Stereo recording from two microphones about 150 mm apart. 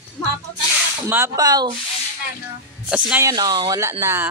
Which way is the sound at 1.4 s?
25° right (ahead or behind).